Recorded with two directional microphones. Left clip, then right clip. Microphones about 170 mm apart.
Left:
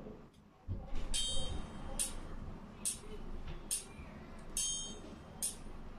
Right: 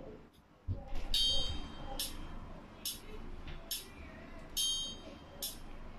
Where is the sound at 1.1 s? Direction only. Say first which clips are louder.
Right 7 dB; 40° left (ahead or behind).